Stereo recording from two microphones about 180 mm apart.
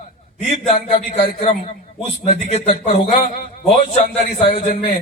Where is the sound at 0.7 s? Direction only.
35° left (ahead or behind).